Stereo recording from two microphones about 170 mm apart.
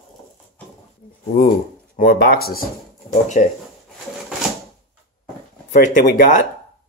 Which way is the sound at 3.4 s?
50° left (ahead or behind).